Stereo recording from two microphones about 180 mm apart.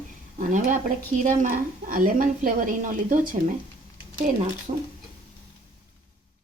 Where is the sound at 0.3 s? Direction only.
45° right (ahead or behind).